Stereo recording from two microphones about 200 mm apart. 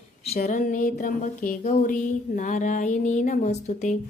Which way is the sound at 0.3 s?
35° left (ahead or behind).